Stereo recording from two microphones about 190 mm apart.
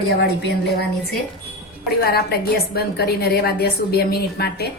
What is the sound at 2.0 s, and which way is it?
A woman's voice, 55° left (ahead or behind).